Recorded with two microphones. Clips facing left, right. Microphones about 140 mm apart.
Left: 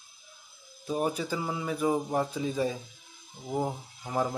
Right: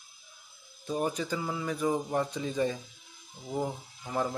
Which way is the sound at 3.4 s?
20° left (ahead or behind).